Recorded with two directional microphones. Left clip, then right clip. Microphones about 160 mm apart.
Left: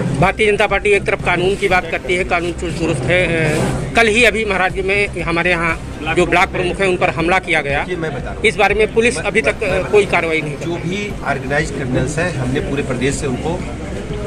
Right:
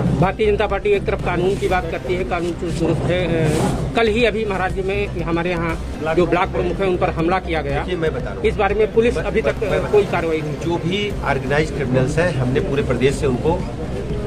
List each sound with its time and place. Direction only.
0.2 s a man's voice: 10° left (ahead or behind)
10.9 s speech: 40° right (ahead or behind)
12.7 s speech: 40° right (ahead or behind)